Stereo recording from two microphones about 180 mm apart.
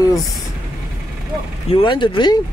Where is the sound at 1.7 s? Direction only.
25° left (ahead or behind).